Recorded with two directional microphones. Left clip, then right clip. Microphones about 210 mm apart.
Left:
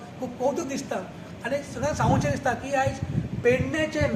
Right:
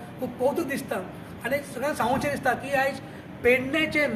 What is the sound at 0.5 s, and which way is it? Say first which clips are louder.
A woman's voice: right 1 dB; 10° right (ahead or behind).